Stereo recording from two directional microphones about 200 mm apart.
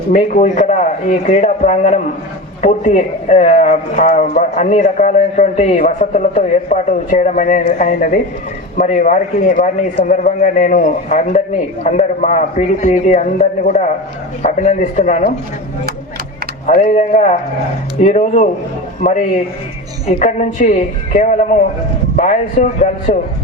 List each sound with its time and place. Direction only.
0.1 s a man's voice: 40° left (ahead or behind)
16.6 s a man's voice: 40° left (ahead or behind)